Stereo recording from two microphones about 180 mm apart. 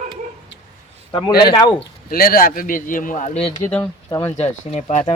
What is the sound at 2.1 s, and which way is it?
A man's voice, 55° left (ahead or behind).